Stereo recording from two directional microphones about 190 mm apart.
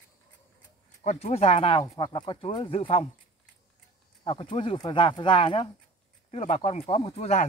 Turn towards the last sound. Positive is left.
turn(degrees=35)  # may be behind; listen again after turning